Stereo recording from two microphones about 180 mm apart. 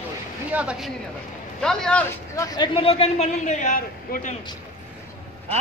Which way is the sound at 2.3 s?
20° left (ahead or behind).